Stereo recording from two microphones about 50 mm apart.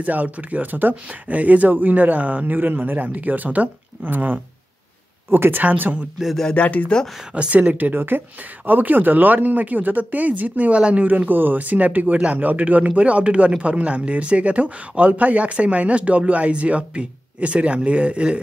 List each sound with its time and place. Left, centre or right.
0.0 s speech: right
6.5 s speech: left
7.3 s speech: right
11.1 s speech: right